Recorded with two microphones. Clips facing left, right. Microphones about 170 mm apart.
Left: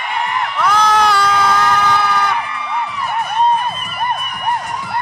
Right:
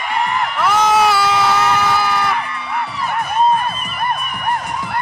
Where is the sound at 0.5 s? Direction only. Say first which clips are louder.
Even; 5° right (ahead or behind).